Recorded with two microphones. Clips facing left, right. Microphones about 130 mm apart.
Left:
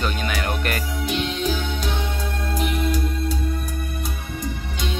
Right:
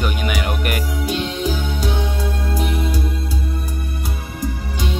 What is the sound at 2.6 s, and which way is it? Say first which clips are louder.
Music: left 1 dB; 35° right (ahead or behind).